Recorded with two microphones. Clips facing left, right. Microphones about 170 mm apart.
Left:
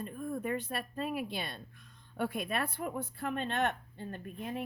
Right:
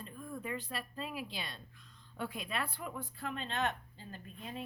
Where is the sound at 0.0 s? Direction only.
50° left (ahead or behind).